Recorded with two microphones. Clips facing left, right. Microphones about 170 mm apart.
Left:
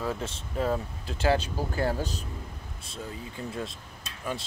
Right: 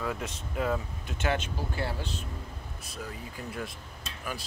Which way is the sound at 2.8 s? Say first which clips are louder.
Left 2 dB; 25° left (ahead or behind).